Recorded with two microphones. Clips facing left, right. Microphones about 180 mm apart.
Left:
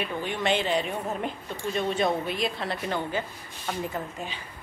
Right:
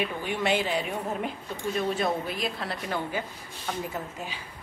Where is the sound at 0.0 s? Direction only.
10° right (ahead or behind).